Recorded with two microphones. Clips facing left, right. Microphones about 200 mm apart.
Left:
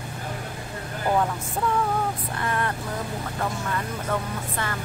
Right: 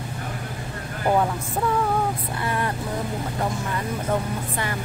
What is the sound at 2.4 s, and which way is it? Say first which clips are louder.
Speech: even; 10° right (ahead or behind).